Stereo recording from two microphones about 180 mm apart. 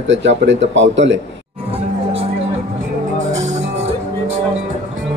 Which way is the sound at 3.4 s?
40° right (ahead or behind).